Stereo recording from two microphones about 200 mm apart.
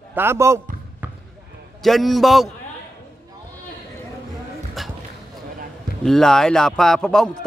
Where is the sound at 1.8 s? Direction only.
Centre (ahead or behind).